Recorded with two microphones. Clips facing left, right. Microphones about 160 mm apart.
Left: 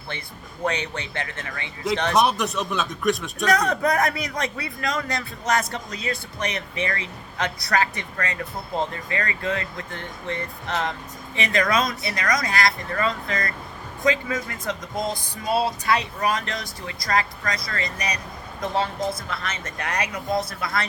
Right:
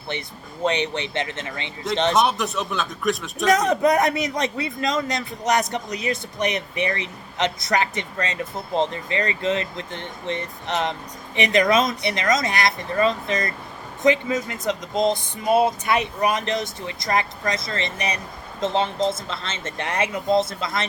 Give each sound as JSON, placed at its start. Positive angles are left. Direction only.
{"t": 0.6, "sound": "speech", "side_deg": -20}
{"t": 2.1, "sound": "speech", "side_deg": 0}
{"t": 3.5, "sound": "speech", "side_deg": -20}